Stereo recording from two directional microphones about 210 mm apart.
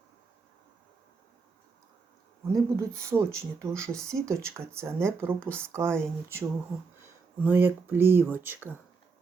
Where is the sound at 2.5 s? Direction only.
15° right (ahead or behind).